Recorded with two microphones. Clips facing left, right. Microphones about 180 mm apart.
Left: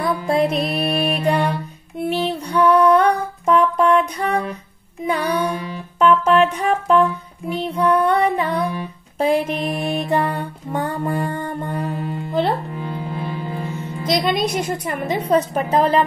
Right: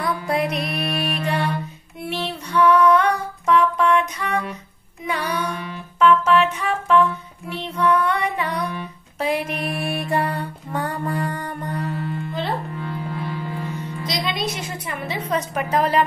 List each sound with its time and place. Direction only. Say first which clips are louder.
0.0 s music: left 4 dB; 25° left (ahead or behind)
2.6 s female singing: left 2 dB; 30° left (ahead or behind)
3.4 s music: left 2 dB; 35° left (ahead or behind)
7.4 s music: left 3 dB; 10° left (ahead or behind)
8.0 s female singing: left 5 dB; 30° left (ahead or behind)
9.2 s music: left 5 dB; 30° left (ahead or behind)
12.1 s music: left 6 dB; 45° left (ahead or behind)
12.7 s music: left 2 dB; 20° left (ahead or behind)
14.0 s music: left 8 dB; 50° left (ahead or behind)
14.5 s a sound: left 7 dB; 45° left (ahead or behind)
15.2 s music: left 6 dB; 30° left (ahead or behind)